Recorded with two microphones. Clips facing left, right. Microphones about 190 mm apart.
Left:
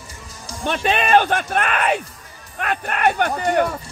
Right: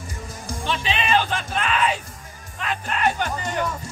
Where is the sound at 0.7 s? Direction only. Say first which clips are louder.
Left 5 dB; 55° left (ahead or behind).